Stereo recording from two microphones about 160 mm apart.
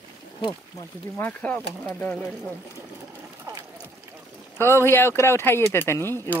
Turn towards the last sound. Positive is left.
turn(degrees=15)  # may be behind; listen again after turning